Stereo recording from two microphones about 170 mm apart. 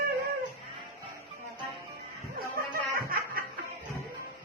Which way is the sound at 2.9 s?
60° right (ahead or behind).